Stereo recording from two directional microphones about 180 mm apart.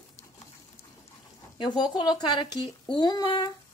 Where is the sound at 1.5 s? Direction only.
25° left (ahead or behind).